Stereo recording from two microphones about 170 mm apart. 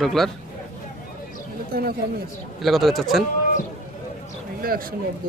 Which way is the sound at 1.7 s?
65° right (ahead or behind).